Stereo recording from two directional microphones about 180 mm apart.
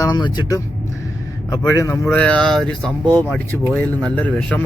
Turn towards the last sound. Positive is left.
turn(degrees=5)  # may be behind; listen again after turning